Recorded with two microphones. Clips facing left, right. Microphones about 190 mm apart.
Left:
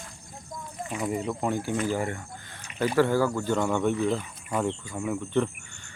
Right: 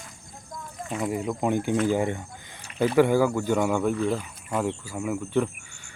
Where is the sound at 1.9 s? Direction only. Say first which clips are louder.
Right 4 dB; 20° right (ahead or behind).